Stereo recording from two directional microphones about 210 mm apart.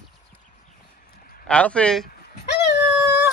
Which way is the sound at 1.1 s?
40° left (ahead or behind).